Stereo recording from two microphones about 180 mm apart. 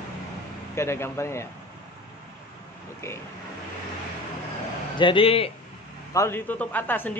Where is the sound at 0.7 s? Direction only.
15° left (ahead or behind).